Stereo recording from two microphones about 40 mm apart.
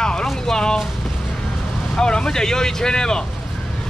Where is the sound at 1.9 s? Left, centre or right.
Centre.